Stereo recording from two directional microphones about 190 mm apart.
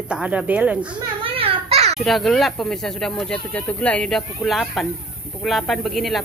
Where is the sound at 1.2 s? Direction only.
30° right (ahead or behind).